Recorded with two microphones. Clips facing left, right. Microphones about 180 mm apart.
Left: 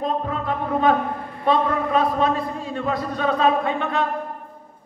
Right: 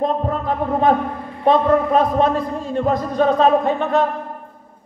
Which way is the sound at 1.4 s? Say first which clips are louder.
Right 6 dB; 45° right (ahead or behind).